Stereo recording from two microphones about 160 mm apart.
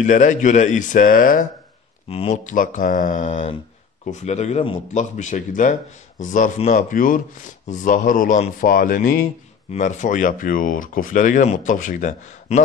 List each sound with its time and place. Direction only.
0.0 s speech: 50° left (ahead or behind)
2.0 s speech: 40° left (ahead or behind)